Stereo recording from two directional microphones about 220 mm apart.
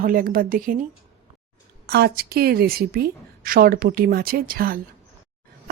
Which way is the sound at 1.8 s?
45° right (ahead or behind).